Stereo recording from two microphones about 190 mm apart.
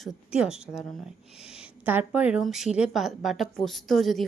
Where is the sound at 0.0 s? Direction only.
5° right (ahead or behind).